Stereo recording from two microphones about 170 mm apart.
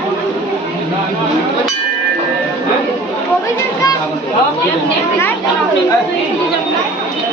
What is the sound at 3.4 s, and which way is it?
Children playing, 20° left (ahead or behind).